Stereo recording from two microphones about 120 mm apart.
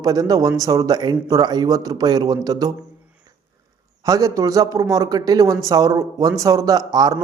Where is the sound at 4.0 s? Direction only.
30° right (ahead or behind).